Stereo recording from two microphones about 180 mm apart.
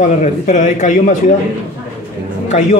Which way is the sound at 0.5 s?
45° left (ahead or behind).